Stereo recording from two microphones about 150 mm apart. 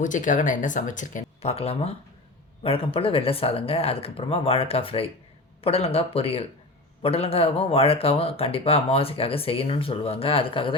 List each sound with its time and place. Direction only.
0.0 s speech: 60° left (ahead or behind)
1.4 s speech: 40° left (ahead or behind)